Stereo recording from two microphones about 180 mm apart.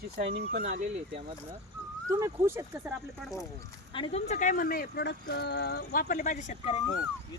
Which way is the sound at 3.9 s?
30° left (ahead or behind).